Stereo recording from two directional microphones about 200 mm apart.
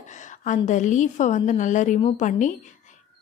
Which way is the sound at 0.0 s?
40° left (ahead or behind).